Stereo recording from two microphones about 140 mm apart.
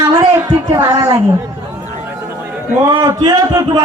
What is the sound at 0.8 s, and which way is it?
Speech, 20° right (ahead or behind).